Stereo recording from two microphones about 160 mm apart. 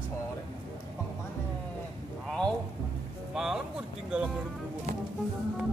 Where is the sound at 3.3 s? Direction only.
5° right (ahead or behind).